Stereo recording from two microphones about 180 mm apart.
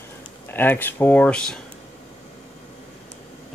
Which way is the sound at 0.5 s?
10° left (ahead or behind).